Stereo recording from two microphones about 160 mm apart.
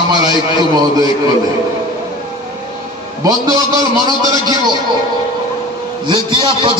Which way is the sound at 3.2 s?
20° right (ahead or behind).